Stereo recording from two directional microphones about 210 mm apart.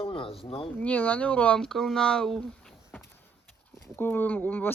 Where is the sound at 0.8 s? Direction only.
5° left (ahead or behind).